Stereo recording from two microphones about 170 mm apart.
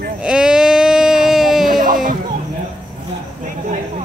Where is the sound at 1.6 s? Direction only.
55° right (ahead or behind).